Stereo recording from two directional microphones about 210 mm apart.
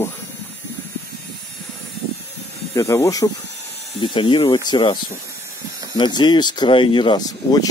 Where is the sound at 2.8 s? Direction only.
15° left (ahead or behind).